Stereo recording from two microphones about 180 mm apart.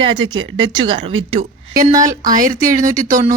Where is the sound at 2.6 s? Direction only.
45° right (ahead or behind).